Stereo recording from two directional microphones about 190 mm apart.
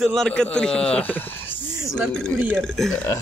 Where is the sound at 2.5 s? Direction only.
5° left (ahead or behind).